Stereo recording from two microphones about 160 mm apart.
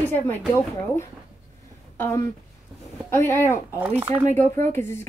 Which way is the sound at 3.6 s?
10° right (ahead or behind).